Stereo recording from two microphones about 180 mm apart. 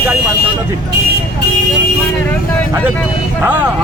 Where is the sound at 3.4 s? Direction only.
10° right (ahead or behind).